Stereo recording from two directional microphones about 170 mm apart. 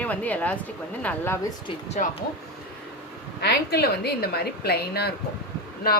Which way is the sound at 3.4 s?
70° left (ahead or behind).